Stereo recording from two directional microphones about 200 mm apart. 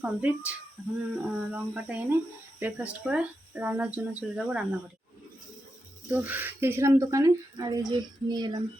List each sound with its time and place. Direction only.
0.0 s speech: 5° right (ahead or behind)
6.1 s speech: 10° right (ahead or behind)